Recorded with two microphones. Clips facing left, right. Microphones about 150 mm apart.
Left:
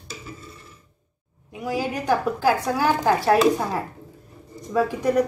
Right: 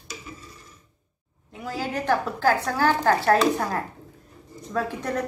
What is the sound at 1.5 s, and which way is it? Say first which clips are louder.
A woman's voice: left 4 dB; 10° left (ahead or behind).